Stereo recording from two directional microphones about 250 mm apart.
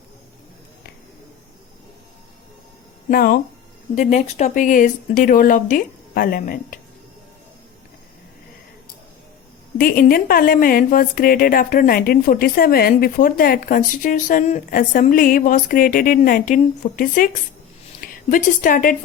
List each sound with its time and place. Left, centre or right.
3.1 s a woman's voice: left
9.7 s a woman's voice: left